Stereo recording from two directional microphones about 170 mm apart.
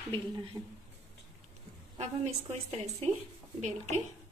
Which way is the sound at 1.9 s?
40° right (ahead or behind).